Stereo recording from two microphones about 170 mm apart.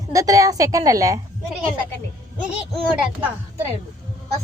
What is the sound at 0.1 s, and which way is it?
A woman's voice, 20° right (ahead or behind).